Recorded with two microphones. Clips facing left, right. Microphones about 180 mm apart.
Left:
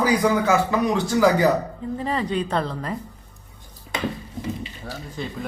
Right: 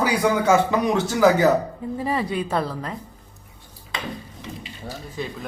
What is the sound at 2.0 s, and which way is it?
Speech, 10° right (ahead or behind).